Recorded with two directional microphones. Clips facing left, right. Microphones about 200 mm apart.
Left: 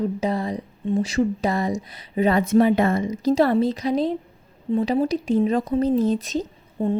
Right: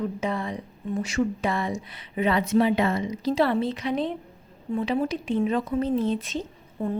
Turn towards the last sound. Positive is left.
turn(degrees=35)  # may be behind; listen again after turning